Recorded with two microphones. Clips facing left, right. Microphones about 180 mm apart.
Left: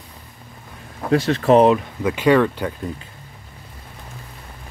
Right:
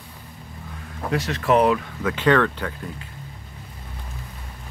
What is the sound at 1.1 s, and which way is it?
Speech, 30° left (ahead or behind).